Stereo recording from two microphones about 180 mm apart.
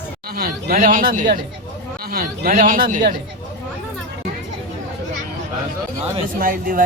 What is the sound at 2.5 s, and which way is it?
Speech, 50° right (ahead or behind).